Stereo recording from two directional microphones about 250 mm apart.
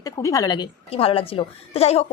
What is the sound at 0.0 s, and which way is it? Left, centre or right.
Speech, centre.